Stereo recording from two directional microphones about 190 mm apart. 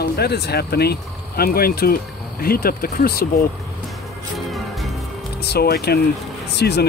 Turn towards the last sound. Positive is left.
turn(degrees=60)  # may be behind; listen again after turning